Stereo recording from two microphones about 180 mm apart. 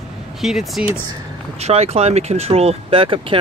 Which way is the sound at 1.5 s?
35° right (ahead or behind).